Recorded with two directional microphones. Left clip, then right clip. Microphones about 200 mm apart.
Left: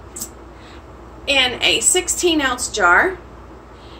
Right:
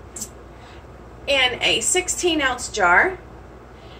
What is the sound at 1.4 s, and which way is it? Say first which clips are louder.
Speech: left 3 dB; 15° left (ahead or behind).